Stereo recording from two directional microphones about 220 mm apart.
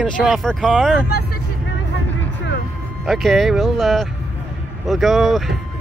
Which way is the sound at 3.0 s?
Centre (ahead or behind).